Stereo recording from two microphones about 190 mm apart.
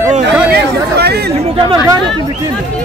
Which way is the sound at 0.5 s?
60° right (ahead or behind).